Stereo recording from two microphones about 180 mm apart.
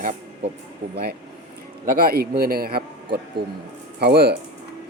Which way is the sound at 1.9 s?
55° right (ahead or behind).